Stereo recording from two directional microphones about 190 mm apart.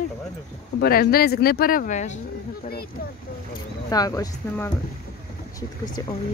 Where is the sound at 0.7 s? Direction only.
50° left (ahead or behind).